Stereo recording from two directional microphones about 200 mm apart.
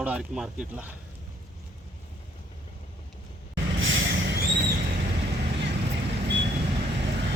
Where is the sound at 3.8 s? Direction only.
70° right (ahead or behind).